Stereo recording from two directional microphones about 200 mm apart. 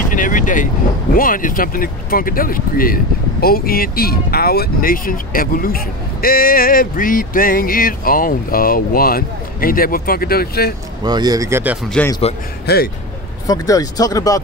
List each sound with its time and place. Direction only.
0.1 s speech: 40° left (ahead or behind)
11.1 s speech: 20° right (ahead or behind)
12.6 s speech: 50° left (ahead or behind)
13.5 s speech: 20° left (ahead or behind)